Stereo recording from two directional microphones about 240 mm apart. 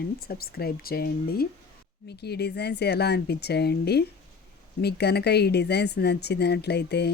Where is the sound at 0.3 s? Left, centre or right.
Left.